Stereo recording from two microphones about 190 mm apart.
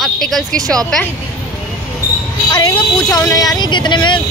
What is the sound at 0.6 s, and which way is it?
Speech, 20° right (ahead or behind).